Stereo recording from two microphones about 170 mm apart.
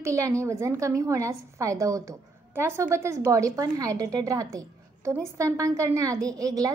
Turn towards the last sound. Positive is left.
turn(degrees=-20)  # may be behind; listen again after turning